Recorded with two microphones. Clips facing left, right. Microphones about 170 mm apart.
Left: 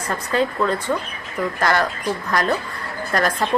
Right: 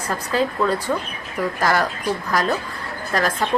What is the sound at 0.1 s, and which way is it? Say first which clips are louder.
A woman's voice: left 1 dB; 5° right (ahead or behind).